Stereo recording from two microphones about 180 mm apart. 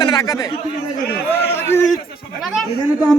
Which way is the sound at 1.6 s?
15° left (ahead or behind).